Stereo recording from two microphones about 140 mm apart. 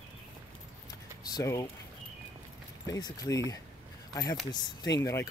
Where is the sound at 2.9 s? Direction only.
25° left (ahead or behind).